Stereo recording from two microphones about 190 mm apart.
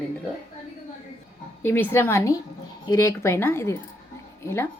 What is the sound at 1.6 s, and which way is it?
Speech, 10° left (ahead or behind).